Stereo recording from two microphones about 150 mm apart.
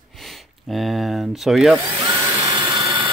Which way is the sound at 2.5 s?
30° right (ahead or behind).